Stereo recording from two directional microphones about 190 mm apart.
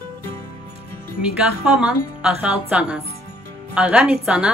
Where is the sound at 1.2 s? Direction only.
5° right (ahead or behind).